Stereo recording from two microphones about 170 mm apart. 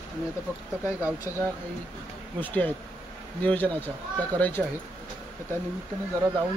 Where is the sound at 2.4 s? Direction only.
10° left (ahead or behind).